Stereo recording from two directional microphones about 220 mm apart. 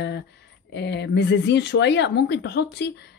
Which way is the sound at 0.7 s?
50° left (ahead or behind).